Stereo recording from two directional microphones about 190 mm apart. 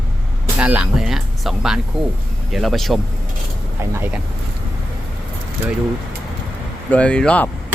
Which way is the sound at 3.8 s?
10° right (ahead or behind).